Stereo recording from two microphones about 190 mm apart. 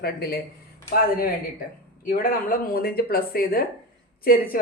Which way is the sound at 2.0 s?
50° left (ahead or behind).